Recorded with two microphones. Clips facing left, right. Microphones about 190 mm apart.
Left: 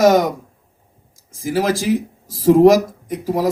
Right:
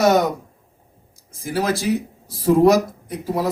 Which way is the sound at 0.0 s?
90° left.